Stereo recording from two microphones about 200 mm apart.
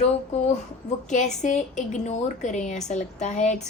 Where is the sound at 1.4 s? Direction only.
40° left (ahead or behind).